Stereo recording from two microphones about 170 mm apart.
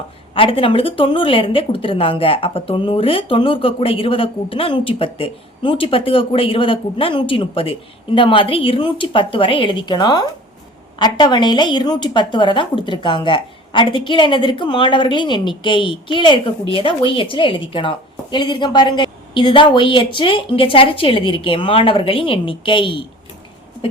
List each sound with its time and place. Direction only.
0.3 s a woman's voice: 30° left (ahead or behind)